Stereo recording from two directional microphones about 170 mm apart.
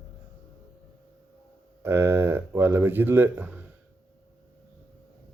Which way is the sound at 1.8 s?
15° right (ahead or behind).